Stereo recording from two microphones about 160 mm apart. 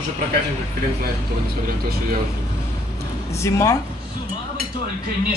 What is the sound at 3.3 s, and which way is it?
Speech, 20° left (ahead or behind).